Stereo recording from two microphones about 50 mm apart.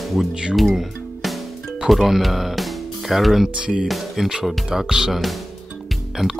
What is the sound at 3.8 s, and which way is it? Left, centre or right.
Speech, centre.